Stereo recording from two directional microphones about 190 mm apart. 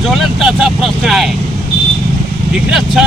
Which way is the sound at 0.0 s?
Centre (ahead or behind).